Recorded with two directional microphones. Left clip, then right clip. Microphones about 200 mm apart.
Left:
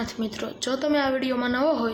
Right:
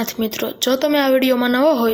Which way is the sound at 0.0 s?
40° right (ahead or behind).